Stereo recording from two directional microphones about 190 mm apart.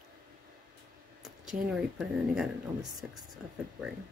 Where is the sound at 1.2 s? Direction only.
5° right (ahead or behind).